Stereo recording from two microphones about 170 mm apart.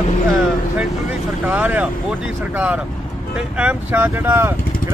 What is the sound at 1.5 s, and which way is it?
Speech, 10° right (ahead or behind).